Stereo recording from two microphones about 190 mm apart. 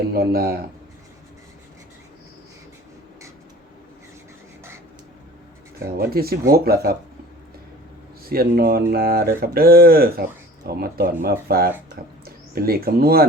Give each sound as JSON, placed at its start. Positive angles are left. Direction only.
{"t": 0.1, "sound": "speech", "side_deg": -55}
{"t": 6.0, "sound": "speech", "side_deg": -55}
{"t": 8.2, "sound": "speech", "side_deg": -50}